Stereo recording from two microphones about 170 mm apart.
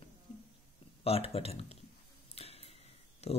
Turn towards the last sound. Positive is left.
turn(degrees=40)  # may be behind; listen again after turning